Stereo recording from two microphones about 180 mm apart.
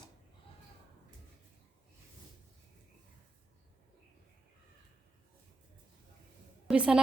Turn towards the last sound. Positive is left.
turn(degrees=-5)  # may be behind; listen again after turning